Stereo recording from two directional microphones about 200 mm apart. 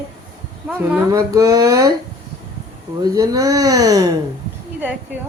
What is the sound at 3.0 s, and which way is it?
Speech, 20° right (ahead or behind).